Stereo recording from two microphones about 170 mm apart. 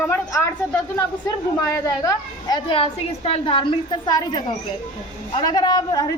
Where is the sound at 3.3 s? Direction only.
30° left (ahead or behind).